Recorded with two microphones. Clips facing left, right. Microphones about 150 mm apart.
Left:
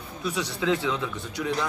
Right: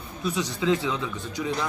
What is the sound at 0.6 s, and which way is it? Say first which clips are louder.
Speech: right 1 dB; centre (ahead or behind).